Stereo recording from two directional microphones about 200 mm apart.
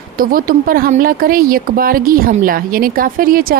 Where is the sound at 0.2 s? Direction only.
45° right (ahead or behind).